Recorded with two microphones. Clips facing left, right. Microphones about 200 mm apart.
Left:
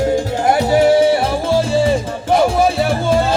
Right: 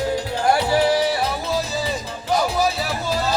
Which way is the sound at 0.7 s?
25° left (ahead or behind).